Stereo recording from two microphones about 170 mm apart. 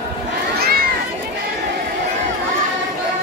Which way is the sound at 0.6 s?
60° right (ahead or behind).